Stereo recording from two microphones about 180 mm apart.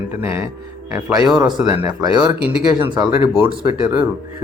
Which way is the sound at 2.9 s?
25° right (ahead or behind).